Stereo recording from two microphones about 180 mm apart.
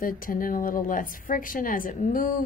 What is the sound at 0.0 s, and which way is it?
A woman's voice, 50° left (ahead or behind).